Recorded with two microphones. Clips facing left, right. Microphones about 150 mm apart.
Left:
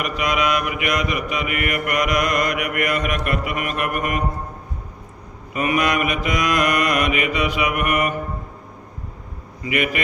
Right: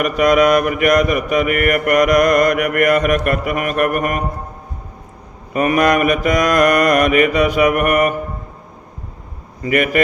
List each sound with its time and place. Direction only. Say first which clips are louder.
0.0 s mantra: right 9 dB; 45° right (ahead or behind)
5.5 s mantra: right 6 dB; 45° right (ahead or behind)
9.6 s mantra: right 6 dB; 45° right (ahead or behind)